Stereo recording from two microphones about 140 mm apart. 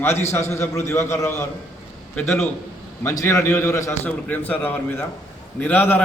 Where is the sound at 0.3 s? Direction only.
20° left (ahead or behind).